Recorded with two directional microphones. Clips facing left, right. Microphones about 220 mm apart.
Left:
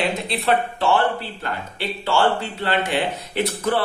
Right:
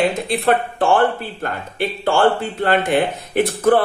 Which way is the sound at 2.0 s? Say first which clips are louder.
Right 4 dB; 50° right (ahead or behind).